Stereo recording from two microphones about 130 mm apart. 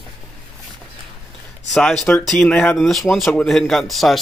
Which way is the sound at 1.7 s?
Centre (ahead or behind).